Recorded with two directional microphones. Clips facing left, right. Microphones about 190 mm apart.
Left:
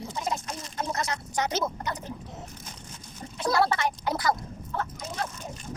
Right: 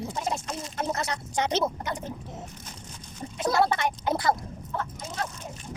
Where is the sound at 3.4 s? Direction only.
20° right (ahead or behind).